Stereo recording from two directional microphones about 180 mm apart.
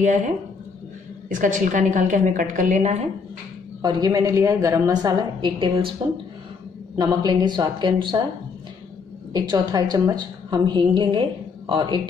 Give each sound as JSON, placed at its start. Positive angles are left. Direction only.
{"t": 1.3, "sound": "a woman's voice", "side_deg": -45}
{"t": 3.8, "sound": "a woman's voice", "side_deg": -25}
{"t": 7.0, "sound": "a woman's voice", "side_deg": -20}
{"t": 9.3, "sound": "a woman's voice", "side_deg": -20}